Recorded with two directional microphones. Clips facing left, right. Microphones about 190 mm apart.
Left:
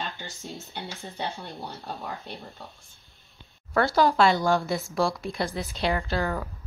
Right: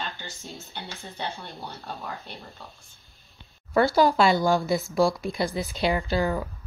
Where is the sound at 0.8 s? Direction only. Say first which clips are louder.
Left 1 dB; 15° left (ahead or behind).